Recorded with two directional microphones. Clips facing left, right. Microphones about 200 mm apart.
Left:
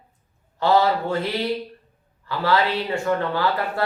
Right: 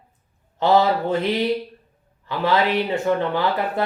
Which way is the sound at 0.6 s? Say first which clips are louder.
Right 1 dB; 20° right (ahead or behind).